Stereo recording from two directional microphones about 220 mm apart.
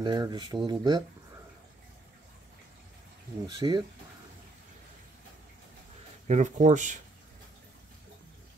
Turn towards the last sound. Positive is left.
turn(degrees=-35)  # may be behind; listen again after turning